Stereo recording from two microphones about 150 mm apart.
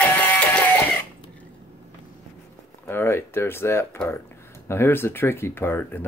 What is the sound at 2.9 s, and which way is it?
Speech, 15° left (ahead or behind).